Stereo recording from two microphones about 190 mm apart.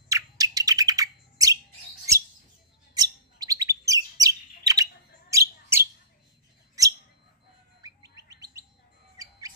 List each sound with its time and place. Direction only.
0.1 s bird: 20° right (ahead or behind)
2.9 s bird: 20° right (ahead or behind)
6.8 s a sound: 20° right (ahead or behind)
7.8 s bird: 20° right (ahead or behind)